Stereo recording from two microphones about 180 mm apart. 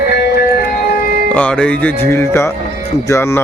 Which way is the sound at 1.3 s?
5° left (ahead or behind).